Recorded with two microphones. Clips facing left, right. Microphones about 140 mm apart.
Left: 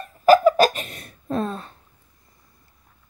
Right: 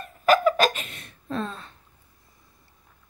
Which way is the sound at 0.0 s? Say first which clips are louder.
Left 6 dB; 35° left (ahead or behind).